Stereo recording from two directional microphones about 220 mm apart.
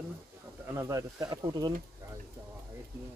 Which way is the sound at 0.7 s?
15° right (ahead or behind).